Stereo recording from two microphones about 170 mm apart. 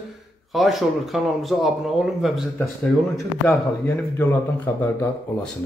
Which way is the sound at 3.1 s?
15° left (ahead or behind).